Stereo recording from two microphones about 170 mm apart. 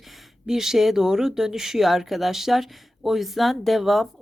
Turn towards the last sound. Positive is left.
turn(degrees=0)  # may be behind; listen again after turning